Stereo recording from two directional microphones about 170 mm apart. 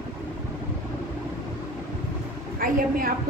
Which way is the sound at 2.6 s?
55° right (ahead or behind).